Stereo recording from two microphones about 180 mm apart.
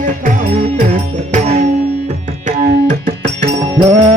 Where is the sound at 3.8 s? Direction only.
35° right (ahead or behind).